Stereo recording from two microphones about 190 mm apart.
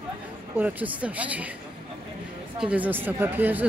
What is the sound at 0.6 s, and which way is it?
Speech, 10° right (ahead or behind).